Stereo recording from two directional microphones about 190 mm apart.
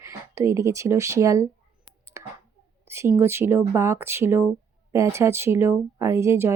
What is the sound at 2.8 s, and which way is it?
Speech, 15° right (ahead or behind).